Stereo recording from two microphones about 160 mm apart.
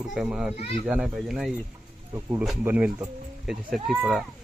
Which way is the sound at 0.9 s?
5° right (ahead or behind).